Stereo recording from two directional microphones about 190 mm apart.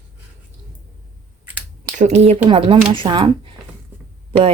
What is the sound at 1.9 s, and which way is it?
Speech, 35° right (ahead or behind).